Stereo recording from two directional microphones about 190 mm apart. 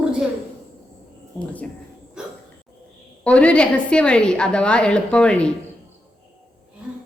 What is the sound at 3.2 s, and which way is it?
A woman's voice, 5° left (ahead or behind).